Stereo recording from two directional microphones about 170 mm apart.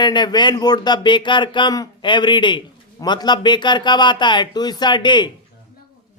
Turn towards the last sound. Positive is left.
turn(degrees=25)  # may be behind; listen again after turning